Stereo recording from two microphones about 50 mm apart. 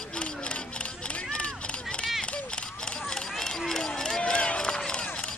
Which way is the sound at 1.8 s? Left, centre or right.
Centre.